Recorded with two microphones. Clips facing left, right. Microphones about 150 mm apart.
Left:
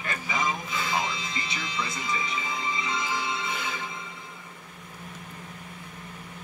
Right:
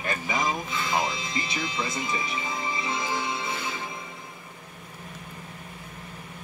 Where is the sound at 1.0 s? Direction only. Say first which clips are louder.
Right 3 dB; 20° right (ahead or behind).